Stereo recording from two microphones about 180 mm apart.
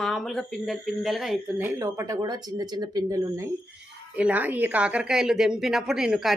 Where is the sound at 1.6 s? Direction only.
15° right (ahead or behind).